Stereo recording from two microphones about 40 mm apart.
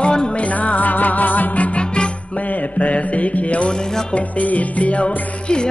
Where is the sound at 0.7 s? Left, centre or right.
Left.